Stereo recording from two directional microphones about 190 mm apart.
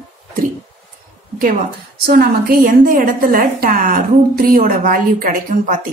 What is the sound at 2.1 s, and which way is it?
A woman's voice, 50° right (ahead or behind).